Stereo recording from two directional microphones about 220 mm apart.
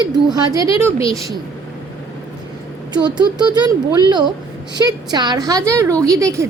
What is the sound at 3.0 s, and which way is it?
A woman's voice, 20° right (ahead or behind).